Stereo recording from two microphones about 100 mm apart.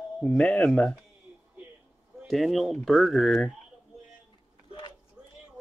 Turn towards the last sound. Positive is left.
turn(degrees=55)  # may be behind; listen again after turning